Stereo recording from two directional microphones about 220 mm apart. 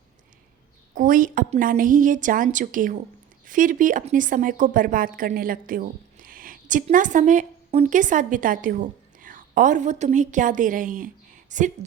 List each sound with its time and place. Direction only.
0.9 s a woman's voice: 35° right (ahead or behind)